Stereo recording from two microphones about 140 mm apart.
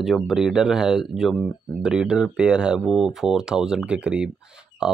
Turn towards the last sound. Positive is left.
turn(degrees=-5)  # may be behind; listen again after turning